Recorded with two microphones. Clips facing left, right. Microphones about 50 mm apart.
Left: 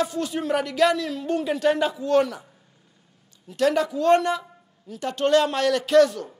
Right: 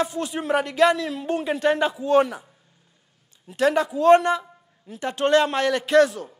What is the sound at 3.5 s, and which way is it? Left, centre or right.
Speech, centre.